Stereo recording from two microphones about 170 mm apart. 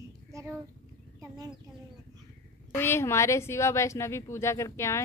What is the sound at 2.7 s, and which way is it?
A woman's voice, 15° left (ahead or behind).